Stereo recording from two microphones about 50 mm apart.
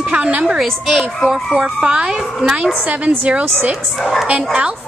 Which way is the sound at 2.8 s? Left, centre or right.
Right.